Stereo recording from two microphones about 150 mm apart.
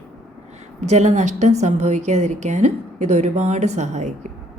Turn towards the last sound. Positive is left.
turn(degrees=-50)  # may be behind; listen again after turning